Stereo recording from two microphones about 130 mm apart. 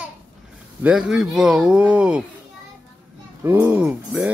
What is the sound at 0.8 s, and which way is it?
Speech, 5° right (ahead or behind).